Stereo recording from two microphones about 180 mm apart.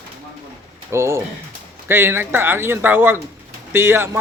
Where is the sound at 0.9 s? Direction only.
15° right (ahead or behind).